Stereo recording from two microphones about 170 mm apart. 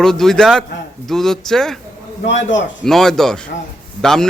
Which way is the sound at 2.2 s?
90° left.